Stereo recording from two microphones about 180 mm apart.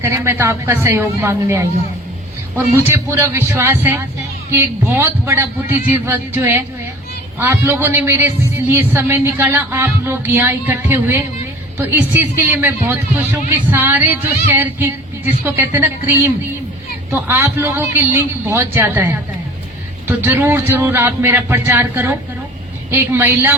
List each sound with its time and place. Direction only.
0.0 s a man's voice: 15° right (ahead or behind)
2.7 s a man's voice: 15° right (ahead or behind)